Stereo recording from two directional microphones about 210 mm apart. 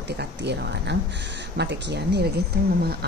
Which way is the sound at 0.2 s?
55° right (ahead or behind).